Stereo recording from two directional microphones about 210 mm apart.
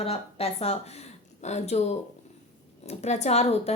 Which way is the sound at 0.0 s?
30° left (ahead or behind).